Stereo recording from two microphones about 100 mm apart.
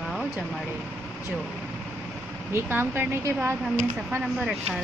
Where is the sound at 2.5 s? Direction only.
20° right (ahead or behind).